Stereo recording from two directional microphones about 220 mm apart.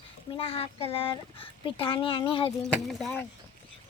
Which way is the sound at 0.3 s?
25° left (ahead or behind).